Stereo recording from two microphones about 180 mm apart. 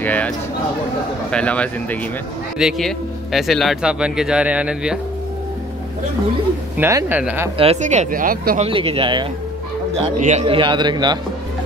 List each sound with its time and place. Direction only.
0.0 s a sound: 10° left (ahead or behind)
1.3 s a man's voice: 5° left (ahead or behind)
6.8 s speech: 15° right (ahead or behind)
7.5 s speech: 35° right (ahead or behind)
8.6 s a man's voice: 30° right (ahead or behind)
10.0 s speech: 40° right (ahead or behind)
10.4 s a man's voice: 25° right (ahead or behind)